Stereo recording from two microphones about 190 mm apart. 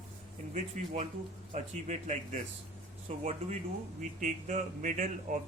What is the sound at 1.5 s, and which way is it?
Speech, 35° right (ahead or behind).